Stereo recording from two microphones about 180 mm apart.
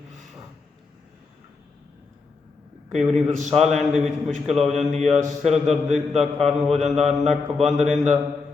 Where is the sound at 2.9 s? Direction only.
Centre (ahead or behind).